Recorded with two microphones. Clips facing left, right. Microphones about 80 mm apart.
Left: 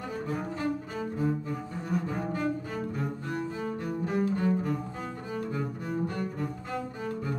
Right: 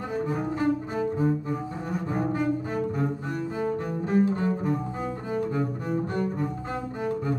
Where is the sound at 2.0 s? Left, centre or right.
Right.